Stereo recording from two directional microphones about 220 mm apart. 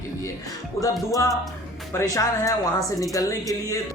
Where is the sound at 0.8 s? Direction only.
15° left (ahead or behind).